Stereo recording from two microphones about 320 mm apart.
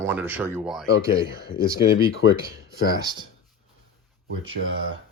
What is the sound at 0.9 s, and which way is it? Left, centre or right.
Speech, left.